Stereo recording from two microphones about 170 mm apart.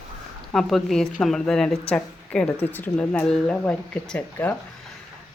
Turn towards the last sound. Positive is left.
turn(degrees=10)  # may be behind; listen again after turning